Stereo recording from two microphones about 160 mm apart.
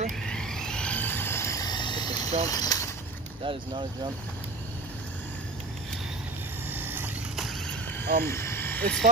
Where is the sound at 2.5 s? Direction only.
20° left (ahead or behind).